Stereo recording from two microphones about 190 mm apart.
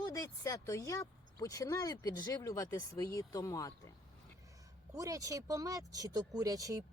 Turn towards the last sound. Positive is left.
turn(degrees=-20)  # may be behind; listen again after turning